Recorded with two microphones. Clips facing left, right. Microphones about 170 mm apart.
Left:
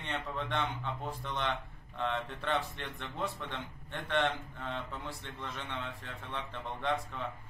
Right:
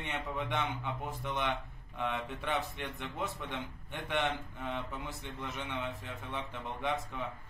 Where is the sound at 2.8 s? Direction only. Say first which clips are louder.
Even; 10° right (ahead or behind).